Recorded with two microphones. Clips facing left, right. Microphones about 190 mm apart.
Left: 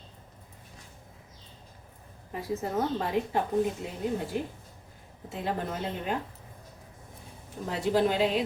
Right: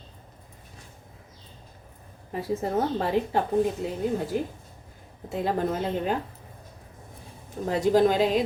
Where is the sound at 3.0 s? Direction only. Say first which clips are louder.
Right 4 dB; 30° right (ahead or behind).